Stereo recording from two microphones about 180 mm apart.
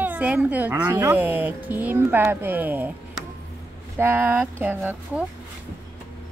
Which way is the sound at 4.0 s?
10° right (ahead or behind).